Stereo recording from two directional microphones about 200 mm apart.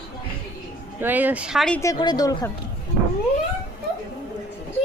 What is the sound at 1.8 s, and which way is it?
Speech, 20° left (ahead or behind).